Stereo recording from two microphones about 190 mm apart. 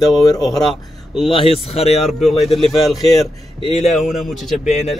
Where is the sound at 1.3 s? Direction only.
30° left (ahead or behind).